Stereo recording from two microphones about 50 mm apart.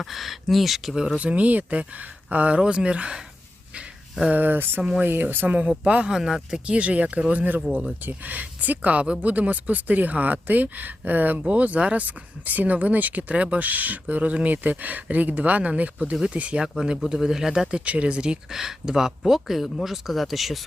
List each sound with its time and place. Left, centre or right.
0.0 s speech: centre
0.9 s speech: centre
1.4 s speech: right
4.3 s speech: right
5.5 s speech: right
6.1 s speech: centre
6.7 s speech: right
16.7 s speech: centre
17.7 s speech: right
18.5 s speech: centre